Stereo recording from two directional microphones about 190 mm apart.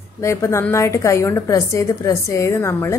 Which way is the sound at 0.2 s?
15° left (ahead or behind).